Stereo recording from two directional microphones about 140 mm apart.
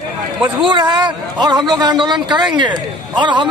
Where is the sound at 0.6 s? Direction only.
35° right (ahead or behind).